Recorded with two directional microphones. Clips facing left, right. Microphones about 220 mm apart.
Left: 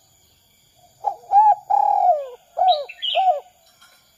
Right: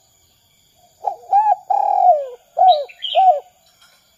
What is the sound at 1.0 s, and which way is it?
Bird, 25° right (ahead or behind).